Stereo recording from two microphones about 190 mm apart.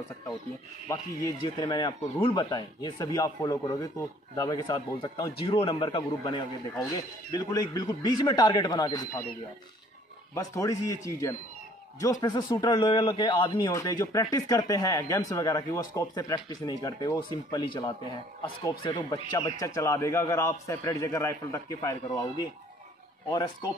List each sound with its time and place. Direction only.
0.8 s speech: 20° left (ahead or behind)
5.4 s speech: 30° left (ahead or behind)
10.3 s speech: 15° left (ahead or behind)